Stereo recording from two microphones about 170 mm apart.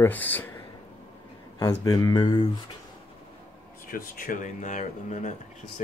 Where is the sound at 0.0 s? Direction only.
10° left (ahead or behind).